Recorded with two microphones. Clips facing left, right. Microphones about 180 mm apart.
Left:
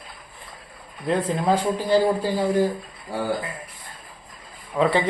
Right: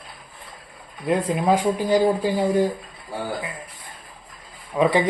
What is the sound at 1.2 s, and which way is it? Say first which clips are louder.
A man's voice: right 3 dB; 15° right (ahead or behind).